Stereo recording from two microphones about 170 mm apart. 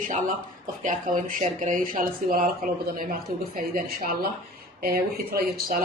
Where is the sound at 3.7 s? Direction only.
55° right (ahead or behind).